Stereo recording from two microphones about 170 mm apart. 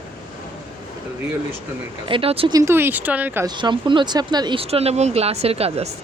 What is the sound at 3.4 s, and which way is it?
Speech, 25° right (ahead or behind).